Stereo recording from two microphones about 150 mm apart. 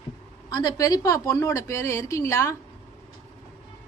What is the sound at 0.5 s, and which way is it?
A woman's voice, 25° left (ahead or behind).